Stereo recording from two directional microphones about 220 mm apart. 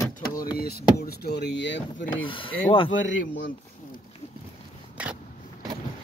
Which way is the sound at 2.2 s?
25° left (ahead or behind).